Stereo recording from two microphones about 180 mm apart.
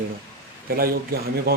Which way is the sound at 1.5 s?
60° right (ahead or behind).